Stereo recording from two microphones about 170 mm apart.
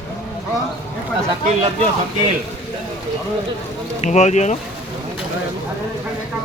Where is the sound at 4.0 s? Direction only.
40° left (ahead or behind).